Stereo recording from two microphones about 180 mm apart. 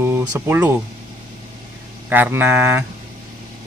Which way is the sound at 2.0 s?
10° right (ahead or behind).